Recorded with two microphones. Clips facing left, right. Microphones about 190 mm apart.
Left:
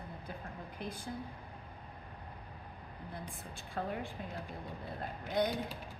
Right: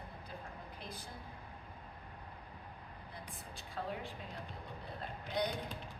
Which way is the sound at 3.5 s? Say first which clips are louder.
Left 4 dB; 50° left (ahead or behind).